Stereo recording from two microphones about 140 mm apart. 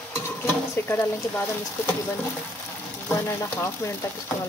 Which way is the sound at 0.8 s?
15° left (ahead or behind).